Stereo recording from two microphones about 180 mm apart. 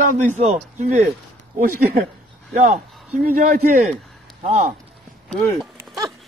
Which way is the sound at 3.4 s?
50° right (ahead or behind).